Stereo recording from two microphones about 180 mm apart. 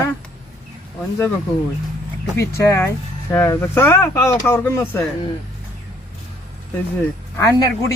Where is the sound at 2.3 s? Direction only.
15° left (ahead or behind).